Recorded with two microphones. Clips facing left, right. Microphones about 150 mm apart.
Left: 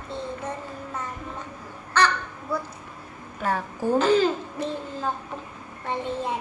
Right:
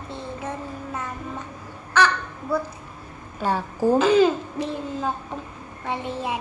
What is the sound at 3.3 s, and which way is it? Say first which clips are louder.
Speech: right 3 dB; 30° right (ahead or behind).